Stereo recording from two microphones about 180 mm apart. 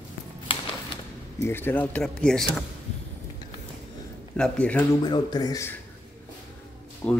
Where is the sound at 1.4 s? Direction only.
10° left (ahead or behind).